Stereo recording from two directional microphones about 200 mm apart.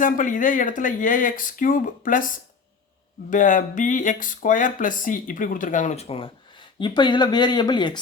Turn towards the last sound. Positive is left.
turn(degrees=20)  # may be behind; listen again after turning